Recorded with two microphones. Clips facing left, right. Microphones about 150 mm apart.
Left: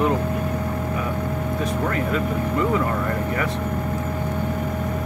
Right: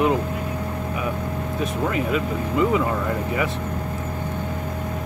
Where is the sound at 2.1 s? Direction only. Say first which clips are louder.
Left 1 dB; 15° right (ahead or behind).